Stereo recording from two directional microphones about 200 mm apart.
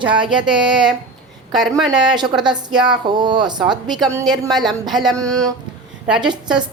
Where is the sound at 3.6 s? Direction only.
Centre (ahead or behind).